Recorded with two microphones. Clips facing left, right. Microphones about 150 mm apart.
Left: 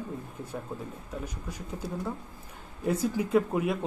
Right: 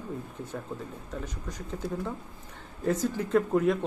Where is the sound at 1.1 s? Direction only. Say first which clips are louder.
Even; 10° left (ahead or behind).